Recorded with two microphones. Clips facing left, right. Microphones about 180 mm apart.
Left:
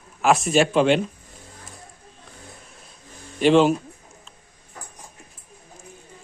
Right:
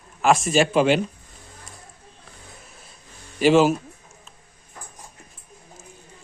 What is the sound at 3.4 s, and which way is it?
Speech, 5° right (ahead or behind).